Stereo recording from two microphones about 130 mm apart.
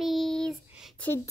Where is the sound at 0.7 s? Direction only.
5° right (ahead or behind).